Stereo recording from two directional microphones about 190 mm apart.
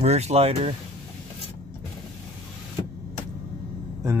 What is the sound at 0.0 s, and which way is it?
Speech, 35° right (ahead or behind).